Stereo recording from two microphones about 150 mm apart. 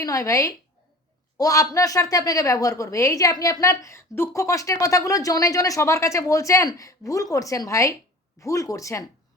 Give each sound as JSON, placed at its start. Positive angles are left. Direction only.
{"t": 0.0, "sound": "a woman's voice", "side_deg": 20}